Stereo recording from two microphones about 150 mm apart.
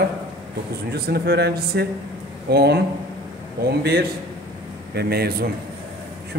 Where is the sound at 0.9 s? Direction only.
90° right.